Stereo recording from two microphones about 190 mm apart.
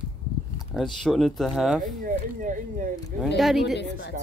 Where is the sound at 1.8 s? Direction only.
45° right (ahead or behind).